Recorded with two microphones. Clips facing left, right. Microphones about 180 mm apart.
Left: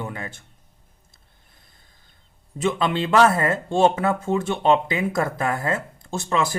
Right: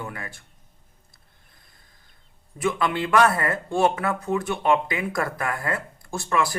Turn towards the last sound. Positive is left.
turn(degrees=20)  # may be behind; listen again after turning